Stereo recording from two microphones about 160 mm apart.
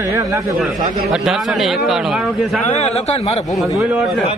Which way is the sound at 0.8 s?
40° right (ahead or behind).